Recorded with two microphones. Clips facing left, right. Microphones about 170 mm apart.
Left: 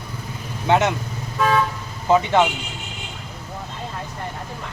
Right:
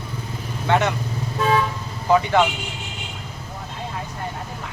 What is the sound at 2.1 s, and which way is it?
Speech, 20° left (ahead or behind).